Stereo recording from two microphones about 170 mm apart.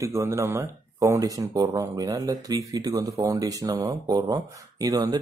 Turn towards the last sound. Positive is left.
turn(degrees=-20)  # may be behind; listen again after turning